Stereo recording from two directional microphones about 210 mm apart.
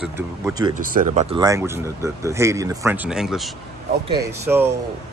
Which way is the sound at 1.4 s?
15° right (ahead or behind).